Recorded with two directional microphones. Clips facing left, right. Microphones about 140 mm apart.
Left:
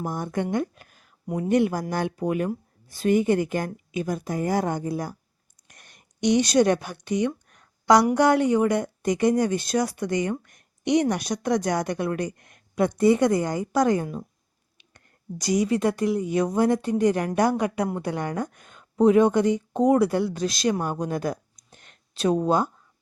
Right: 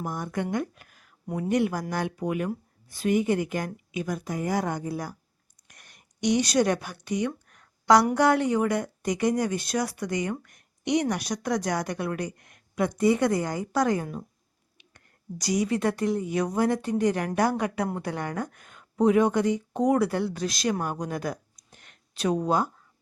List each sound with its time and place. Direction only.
0.0 s a woman's voice: 30° left (ahead or behind)